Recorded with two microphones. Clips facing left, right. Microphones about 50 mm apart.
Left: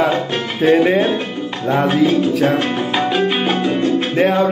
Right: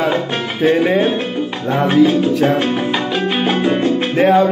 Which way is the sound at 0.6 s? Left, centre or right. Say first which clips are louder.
Left 1 dB; centre.